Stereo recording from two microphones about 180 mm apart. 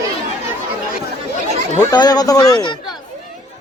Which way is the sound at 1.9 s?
20° left (ahead or behind).